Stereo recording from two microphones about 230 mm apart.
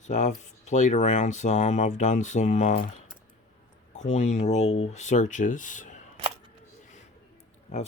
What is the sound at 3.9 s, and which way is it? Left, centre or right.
Speech, left.